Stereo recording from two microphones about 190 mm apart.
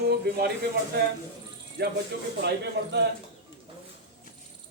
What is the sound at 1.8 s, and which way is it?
Speech, 60° right (ahead or behind).